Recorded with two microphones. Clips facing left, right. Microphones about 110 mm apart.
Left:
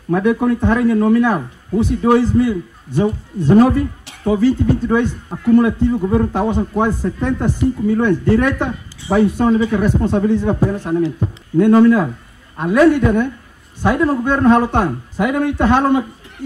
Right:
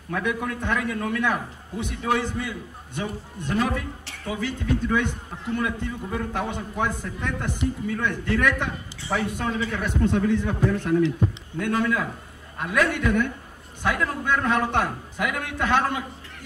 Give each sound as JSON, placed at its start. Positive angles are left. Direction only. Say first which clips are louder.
{"t": 0.1, "sound": "a man's voice", "louder": "left 12 dB", "side_deg": 35}
{"t": 9.8, "sound": "a man's voice", "louder": "left 7 dB", "side_deg": 30}